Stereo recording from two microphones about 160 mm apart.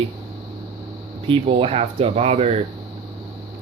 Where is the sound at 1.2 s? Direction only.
35° right (ahead or behind).